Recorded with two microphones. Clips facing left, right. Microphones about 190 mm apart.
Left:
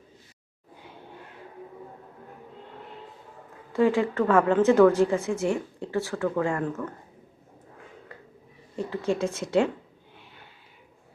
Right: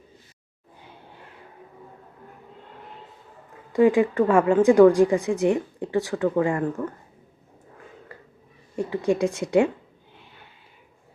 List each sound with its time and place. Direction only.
3.7 s a woman's voice: 15° right (ahead or behind)
8.7 s a woman's voice: 15° right (ahead or behind)